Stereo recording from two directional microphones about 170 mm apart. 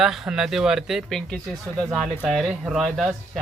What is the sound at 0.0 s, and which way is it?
Speech, 5° right (ahead or behind).